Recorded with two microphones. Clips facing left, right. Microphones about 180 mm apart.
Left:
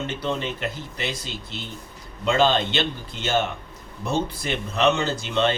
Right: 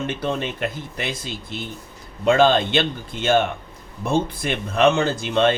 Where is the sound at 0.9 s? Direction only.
50° right (ahead or behind).